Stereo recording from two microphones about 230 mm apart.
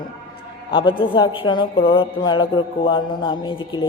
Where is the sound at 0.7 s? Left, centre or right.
Left.